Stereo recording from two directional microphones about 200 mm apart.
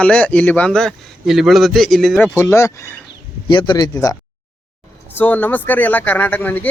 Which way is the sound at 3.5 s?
25° left (ahead or behind).